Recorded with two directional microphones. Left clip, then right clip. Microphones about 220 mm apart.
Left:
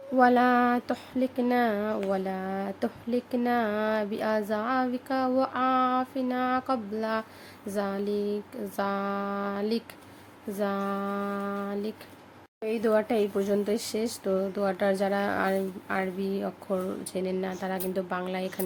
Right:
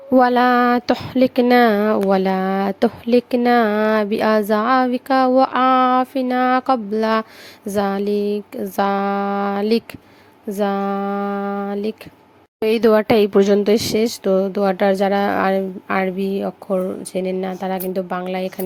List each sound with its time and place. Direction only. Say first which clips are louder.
0.2 s speech: right 7 dB; 45° right (ahead or behind)
12.5 s speech: right 11 dB; 45° right (ahead or behind); by 18.6 s 30° right (ahead or behind)